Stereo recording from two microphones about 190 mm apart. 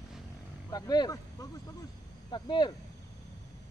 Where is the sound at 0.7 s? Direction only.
20° left (ahead or behind).